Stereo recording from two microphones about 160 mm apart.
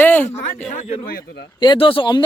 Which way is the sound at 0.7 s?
70° left (ahead or behind).